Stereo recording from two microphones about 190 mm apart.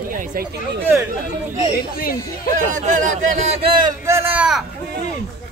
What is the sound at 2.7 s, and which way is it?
Speech, 40° right (ahead or behind).